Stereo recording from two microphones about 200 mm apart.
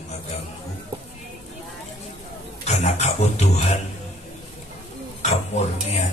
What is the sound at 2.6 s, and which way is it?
Speech, 35° left (ahead or behind).